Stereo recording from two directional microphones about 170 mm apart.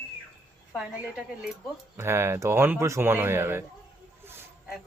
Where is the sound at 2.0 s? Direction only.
15° right (ahead or behind).